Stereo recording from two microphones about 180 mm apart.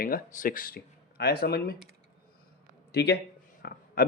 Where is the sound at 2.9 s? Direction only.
65° left (ahead or behind).